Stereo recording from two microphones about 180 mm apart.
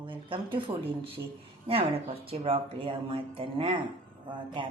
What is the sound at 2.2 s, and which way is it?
Speech, 30° right (ahead or behind).